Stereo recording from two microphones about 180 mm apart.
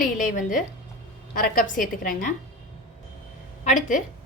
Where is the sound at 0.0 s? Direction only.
50° left (ahead or behind).